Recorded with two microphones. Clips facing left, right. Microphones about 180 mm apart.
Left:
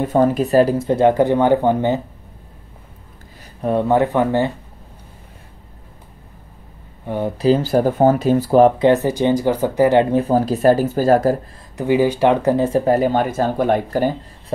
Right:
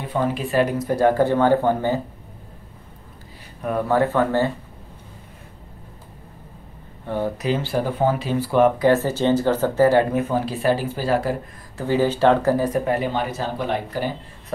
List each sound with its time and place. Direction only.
0.0 s speech: 45° left (ahead or behind); by 2.0 s 20° left (ahead or behind)
3.6 s speech: 25° left (ahead or behind)
7.1 s speech: 15° left (ahead or behind)
7.3 s speech: 35° left (ahead or behind)
8.7 s speech: 20° left (ahead or behind)
10.1 s speech: 35° left (ahead or behind)
11.7 s speech: 15° left (ahead or behind)
12.9 s speech: 45° left (ahead or behind)